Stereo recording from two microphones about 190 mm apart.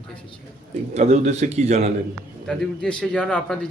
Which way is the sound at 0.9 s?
35° right (ahead or behind).